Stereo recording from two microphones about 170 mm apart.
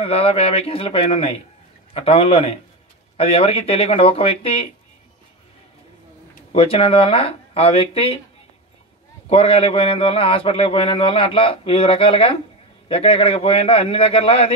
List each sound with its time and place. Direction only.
0.0 s a man's voice: 35° left (ahead or behind)
6.5 s a man's voice: 35° left (ahead or behind)
9.3 s a man's voice: 35° left (ahead or behind)